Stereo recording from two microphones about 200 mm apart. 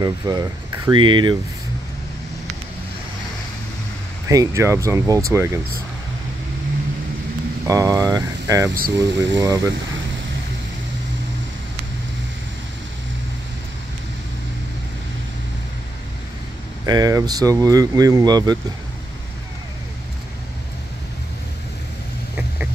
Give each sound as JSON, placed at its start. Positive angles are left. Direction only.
{"t": 0.0, "sound": "speech", "side_deg": -20}
{"t": 4.3, "sound": "speech", "side_deg": -15}
{"t": 7.6, "sound": "speech", "side_deg": -15}
{"t": 8.7, "sound": "speech", "side_deg": -45}
{"t": 9.4, "sound": "speech", "side_deg": -15}
{"t": 16.8, "sound": "speech", "side_deg": -20}